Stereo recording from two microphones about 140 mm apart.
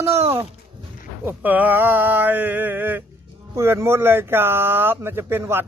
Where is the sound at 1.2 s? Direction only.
10° right (ahead or behind).